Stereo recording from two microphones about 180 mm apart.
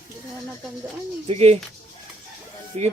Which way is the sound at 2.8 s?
35° right (ahead or behind).